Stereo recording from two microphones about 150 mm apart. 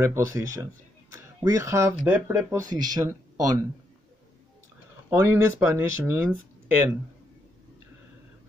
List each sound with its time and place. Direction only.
0.0 s speech: 20° right (ahead or behind)
5.1 s speech: 10° right (ahead or behind)